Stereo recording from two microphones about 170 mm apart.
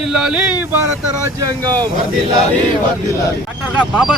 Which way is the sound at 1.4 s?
25° right (ahead or behind).